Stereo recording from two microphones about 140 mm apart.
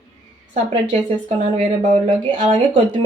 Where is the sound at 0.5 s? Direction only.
55° right (ahead or behind).